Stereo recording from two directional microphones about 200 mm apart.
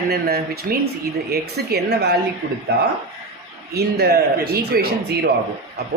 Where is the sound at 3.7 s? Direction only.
55° right (ahead or behind).